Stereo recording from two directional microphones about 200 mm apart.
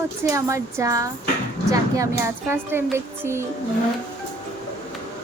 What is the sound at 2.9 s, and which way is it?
Music, 15° right (ahead or behind).